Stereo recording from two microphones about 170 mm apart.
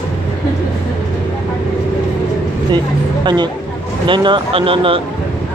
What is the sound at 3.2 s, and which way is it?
Speech, 25° right (ahead or behind).